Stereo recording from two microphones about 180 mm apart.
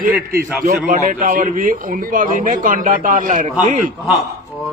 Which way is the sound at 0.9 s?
45° right (ahead or behind).